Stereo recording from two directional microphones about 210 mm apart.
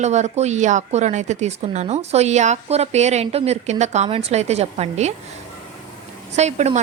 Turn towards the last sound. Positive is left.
turn(degrees=-35)  # may be behind; listen again after turning